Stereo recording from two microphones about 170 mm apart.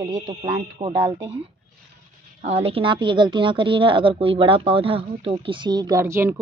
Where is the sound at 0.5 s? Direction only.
25° right (ahead or behind).